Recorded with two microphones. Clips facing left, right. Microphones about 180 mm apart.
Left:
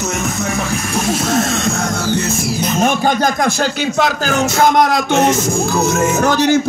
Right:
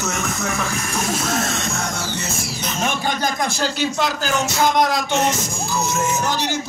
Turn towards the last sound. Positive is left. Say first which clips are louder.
# left 9 dB
turn(degrees=50)  # may be behind; listen again after turning